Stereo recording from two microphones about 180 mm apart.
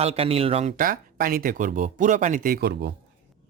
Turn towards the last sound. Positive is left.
turn(degrees=-70)  # may be behind; listen again after turning